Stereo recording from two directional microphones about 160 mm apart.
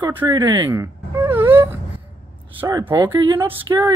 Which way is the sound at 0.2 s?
15° right (ahead or behind).